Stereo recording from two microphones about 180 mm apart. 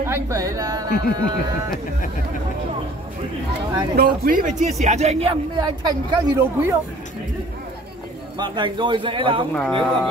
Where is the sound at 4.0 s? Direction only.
50° right (ahead or behind); by 5.7 s 25° right (ahead or behind).